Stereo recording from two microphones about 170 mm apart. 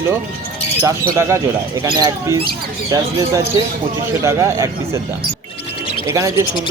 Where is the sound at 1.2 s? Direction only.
15° right (ahead or behind).